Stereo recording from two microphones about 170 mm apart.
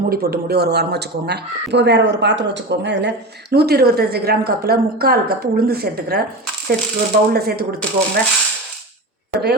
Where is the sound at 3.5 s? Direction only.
70° right (ahead or behind).